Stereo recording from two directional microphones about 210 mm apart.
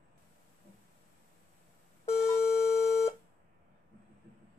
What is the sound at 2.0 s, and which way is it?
Beep, 30° left (ahead or behind).